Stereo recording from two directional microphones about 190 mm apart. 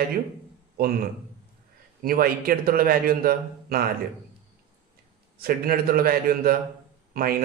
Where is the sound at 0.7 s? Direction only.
50° right (ahead or behind).